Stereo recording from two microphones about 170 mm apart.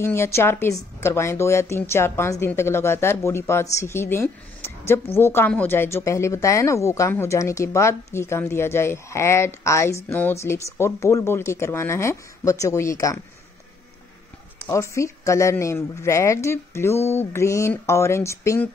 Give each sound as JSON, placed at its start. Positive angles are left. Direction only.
{"t": 0.0, "sound": "a woman's voice", "side_deg": 15}
{"t": 14.7, "sound": "a woman's voice", "side_deg": 15}